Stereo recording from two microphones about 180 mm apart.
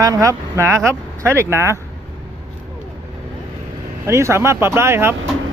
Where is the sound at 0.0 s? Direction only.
20° right (ahead or behind).